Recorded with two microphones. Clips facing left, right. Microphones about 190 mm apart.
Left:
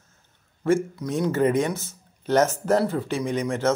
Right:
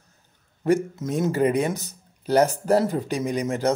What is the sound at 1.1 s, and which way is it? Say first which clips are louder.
Speech: even; 40° right (ahead or behind).